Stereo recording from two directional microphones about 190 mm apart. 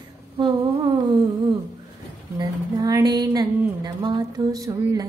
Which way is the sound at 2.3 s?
20° right (ahead or behind).